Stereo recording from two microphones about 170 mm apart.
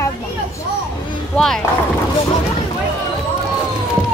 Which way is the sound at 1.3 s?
5° left (ahead or behind).